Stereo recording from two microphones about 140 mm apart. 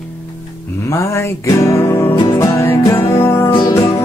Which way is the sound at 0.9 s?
20° left (ahead or behind).